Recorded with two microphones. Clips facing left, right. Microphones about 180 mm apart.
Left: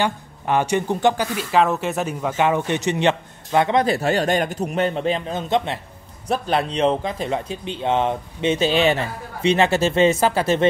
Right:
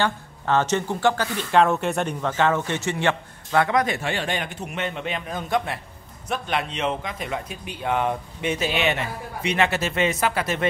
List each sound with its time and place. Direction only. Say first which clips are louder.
0.0 s a man's voice: left 2 dB; 15° left (ahead or behind)